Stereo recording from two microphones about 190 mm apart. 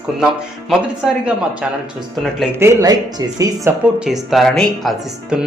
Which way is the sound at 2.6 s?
15° right (ahead or behind).